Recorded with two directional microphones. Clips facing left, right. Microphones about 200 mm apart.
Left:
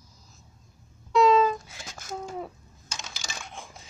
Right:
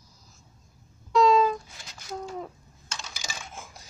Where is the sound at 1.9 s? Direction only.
45° left (ahead or behind).